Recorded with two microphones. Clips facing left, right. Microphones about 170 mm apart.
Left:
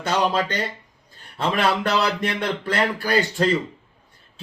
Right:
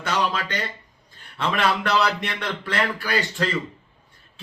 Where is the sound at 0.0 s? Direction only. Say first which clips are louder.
Left 4 dB; 35° left (ahead or behind).